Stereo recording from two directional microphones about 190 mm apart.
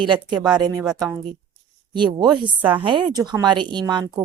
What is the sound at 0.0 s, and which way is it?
A woman's voice, 25° right (ahead or behind).